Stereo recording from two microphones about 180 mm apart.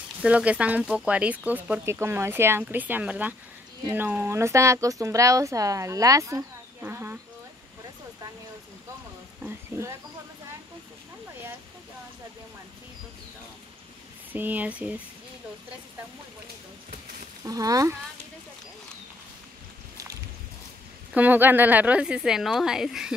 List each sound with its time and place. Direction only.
0.2 s speech: 5° right (ahead or behind)
9.4 s speech: 15° right (ahead or behind)
14.3 s speech: 10° right (ahead or behind)
17.5 s speech: 20° right (ahead or behind)
21.1 s a woman's voice: 10° right (ahead or behind)